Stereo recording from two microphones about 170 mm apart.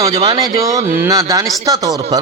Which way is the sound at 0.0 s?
25° right (ahead or behind).